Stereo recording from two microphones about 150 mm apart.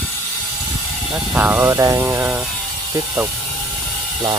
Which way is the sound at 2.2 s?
10° right (ahead or behind).